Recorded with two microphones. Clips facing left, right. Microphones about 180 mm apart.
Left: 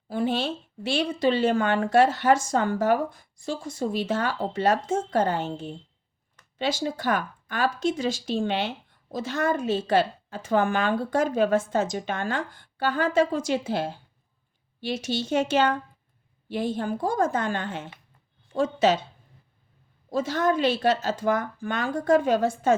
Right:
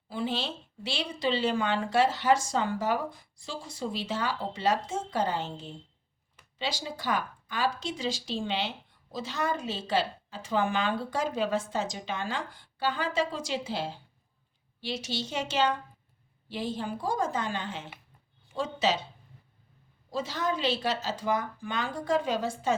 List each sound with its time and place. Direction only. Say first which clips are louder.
0.1 s a woman's voice: left 6 dB; 50° left (ahead or behind)
20.1 s a woman's voice: left 7 dB; 50° left (ahead or behind)